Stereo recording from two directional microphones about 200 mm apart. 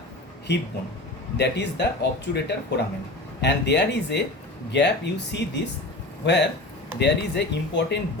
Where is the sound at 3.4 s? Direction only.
60° left (ahead or behind).